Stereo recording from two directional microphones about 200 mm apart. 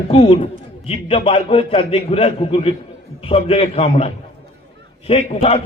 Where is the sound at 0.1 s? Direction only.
30° left (ahead or behind).